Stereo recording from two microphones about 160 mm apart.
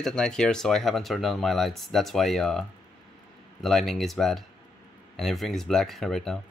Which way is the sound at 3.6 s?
Centre (ahead or behind).